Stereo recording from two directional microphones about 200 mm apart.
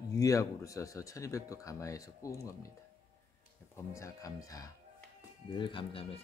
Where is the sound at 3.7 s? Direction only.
15° left (ahead or behind).